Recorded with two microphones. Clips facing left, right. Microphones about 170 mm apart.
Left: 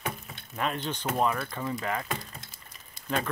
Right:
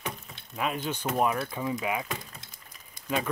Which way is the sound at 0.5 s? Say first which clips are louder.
Right 1 dB; 5° right (ahead or behind).